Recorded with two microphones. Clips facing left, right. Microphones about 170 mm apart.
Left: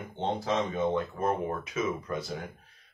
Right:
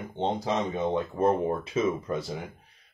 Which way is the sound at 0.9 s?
30° right (ahead or behind).